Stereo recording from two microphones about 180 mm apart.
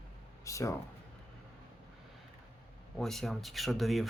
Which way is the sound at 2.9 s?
Centre (ahead or behind).